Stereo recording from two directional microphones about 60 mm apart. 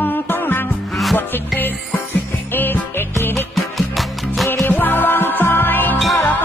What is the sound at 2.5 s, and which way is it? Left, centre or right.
Music, left.